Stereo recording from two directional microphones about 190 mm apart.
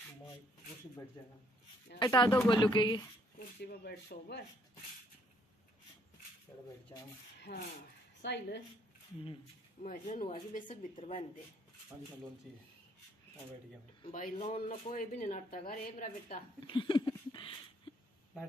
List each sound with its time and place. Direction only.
2.0 s speech: 20° left (ahead or behind)
3.3 s speech: 60° left (ahead or behind)
7.3 s rub: 60° left (ahead or behind)
8.2 s speech: 60° left (ahead or behind)
9.8 s speech: 40° left (ahead or behind)
14.1 s speech: 40° left (ahead or behind)
16.6 s a sound: 25° left (ahead or behind)